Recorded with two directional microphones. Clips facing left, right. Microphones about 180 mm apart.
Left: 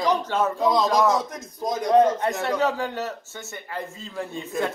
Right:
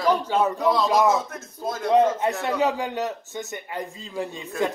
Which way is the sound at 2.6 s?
15° right (ahead or behind).